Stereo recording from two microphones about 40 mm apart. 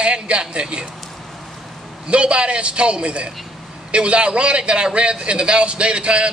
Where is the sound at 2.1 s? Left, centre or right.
Right.